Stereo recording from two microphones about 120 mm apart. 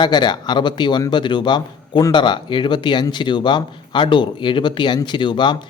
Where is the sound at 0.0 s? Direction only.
35° left (ahead or behind).